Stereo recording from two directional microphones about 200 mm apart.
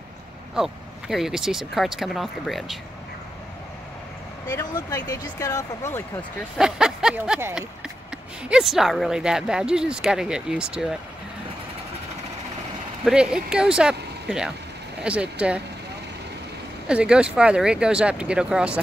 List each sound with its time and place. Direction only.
0.6 s speech: centre (ahead or behind)
4.5 s speech: 15° left (ahead or behind)
6.6 s speech: 5° right (ahead or behind)
13.0 s speech: 5° right (ahead or behind)
16.8 s speech: 5° right (ahead or behind)